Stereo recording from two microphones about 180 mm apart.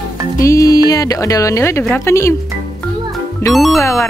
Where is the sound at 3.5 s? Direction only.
Centre (ahead or behind).